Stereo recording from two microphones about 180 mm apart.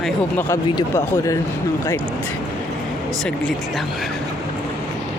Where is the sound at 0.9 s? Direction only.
15° left (ahead or behind).